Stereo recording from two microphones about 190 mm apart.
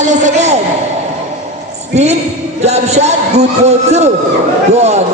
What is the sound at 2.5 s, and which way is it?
A man's voice, 35° right (ahead or behind).